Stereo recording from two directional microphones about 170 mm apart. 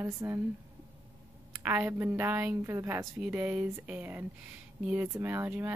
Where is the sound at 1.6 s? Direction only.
15° right (ahead or behind).